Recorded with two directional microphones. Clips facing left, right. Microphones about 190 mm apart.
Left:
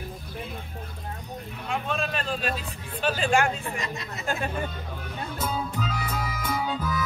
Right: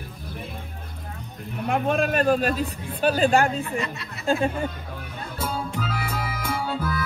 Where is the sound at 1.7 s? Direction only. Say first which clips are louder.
Right 7 dB; 55° right (ahead or behind); by 3.5 s 35° right (ahead or behind).